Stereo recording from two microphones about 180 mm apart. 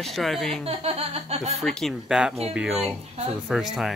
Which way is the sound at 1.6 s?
Centre (ahead or behind).